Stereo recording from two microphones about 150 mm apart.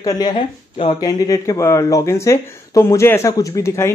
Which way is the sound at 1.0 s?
25° left (ahead or behind).